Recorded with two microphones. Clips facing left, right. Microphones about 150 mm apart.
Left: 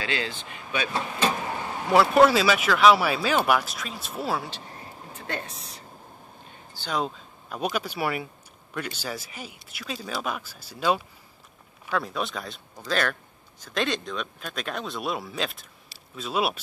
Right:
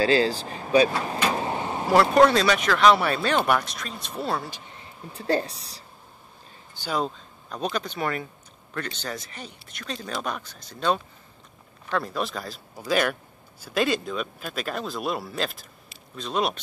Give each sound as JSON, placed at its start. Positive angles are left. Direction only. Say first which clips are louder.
{"t": 0.0, "sound": "speech", "louder": "right 10 dB", "side_deg": -35}
{"t": 1.3, "sound": "vehicle", "louder": "right 4 dB", "side_deg": -25}
{"t": 2.1, "sound": "speech", "louder": "right 1 dB", "side_deg": 5}
{"t": 5.1, "sound": "speech", "louder": "right 10 dB", "side_deg": -35}
{"t": 6.9, "sound": "speech", "louder": "right 1 dB", "side_deg": 0}